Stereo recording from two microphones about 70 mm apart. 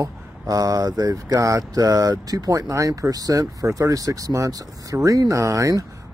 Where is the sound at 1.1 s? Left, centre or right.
Right.